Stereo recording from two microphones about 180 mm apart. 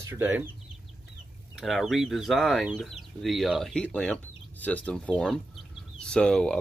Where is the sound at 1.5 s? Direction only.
Centre (ahead or behind).